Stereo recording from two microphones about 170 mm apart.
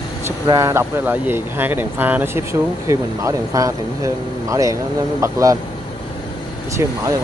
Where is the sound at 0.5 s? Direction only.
20° right (ahead or behind).